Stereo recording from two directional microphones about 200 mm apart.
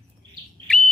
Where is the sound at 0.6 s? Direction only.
5° left (ahead or behind).